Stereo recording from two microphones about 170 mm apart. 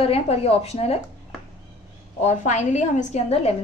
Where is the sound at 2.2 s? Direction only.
45° left (ahead or behind).